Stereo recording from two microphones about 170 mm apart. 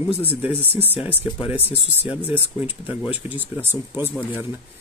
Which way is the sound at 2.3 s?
10° right (ahead or behind).